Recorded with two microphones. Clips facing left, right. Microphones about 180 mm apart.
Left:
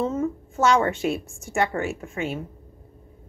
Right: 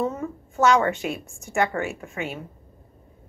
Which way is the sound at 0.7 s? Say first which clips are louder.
Even; 30° left (ahead or behind).